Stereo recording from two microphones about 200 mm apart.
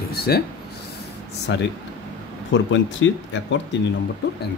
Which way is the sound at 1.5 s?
60° left (ahead or behind).